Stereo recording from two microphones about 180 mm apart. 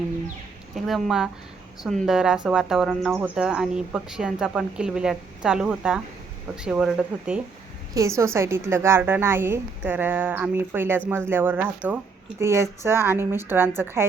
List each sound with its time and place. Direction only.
0.9 s speech: centre (ahead or behind)
7.9 s a woman's voice: 15° right (ahead or behind)